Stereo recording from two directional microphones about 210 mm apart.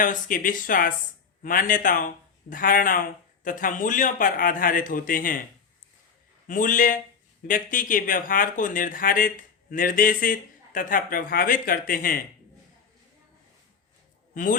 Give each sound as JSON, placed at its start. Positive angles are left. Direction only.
{"t": 0.0, "sound": "speech", "side_deg": 40}
{"t": 6.5, "sound": "speech", "side_deg": 40}
{"t": 14.3, "sound": "speech", "side_deg": 40}